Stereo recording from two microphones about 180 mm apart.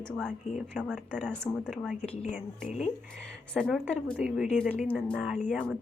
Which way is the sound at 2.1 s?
35° left (ahead or behind).